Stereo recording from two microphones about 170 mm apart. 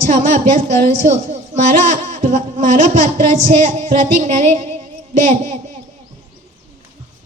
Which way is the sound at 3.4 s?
45° right (ahead or behind).